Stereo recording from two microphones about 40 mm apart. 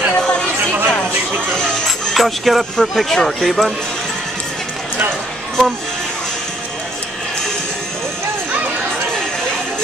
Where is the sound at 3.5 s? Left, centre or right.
Centre.